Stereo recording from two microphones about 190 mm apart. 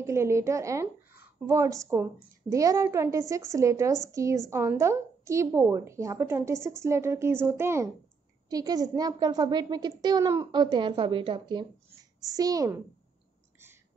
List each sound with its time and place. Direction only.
0.0 s a woman's voice: 15° right (ahead or behind)